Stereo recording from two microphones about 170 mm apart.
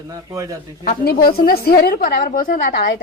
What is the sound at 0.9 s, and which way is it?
A woman's voice, 55° left (ahead or behind).